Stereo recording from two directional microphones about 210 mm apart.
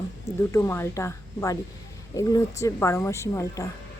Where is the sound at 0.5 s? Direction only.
15° left (ahead or behind).